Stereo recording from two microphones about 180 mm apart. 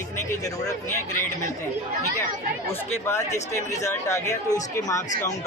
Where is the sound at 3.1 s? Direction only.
15° left (ahead or behind).